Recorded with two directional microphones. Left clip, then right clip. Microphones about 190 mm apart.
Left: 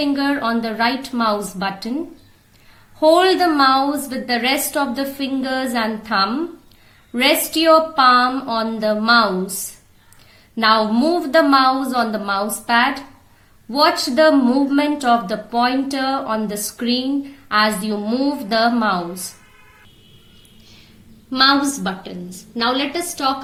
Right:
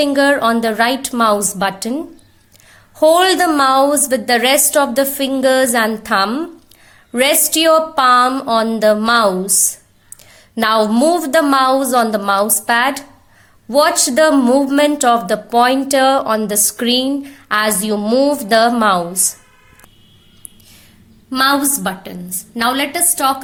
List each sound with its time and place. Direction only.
0.0 s a woman's voice: 45° right (ahead or behind)
3.0 s a woman's voice: 45° right (ahead or behind)
10.5 s a woman's voice: 45° right (ahead or behind)
21.2 s a woman's voice: 45° right (ahead or behind)